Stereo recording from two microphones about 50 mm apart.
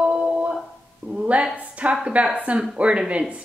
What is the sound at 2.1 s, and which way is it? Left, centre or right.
A woman's voice, right.